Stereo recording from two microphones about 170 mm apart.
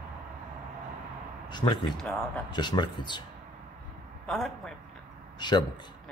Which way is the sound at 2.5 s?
25° left (ahead or behind).